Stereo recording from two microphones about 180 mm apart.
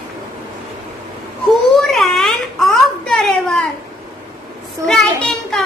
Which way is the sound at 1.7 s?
Centre (ahead or behind).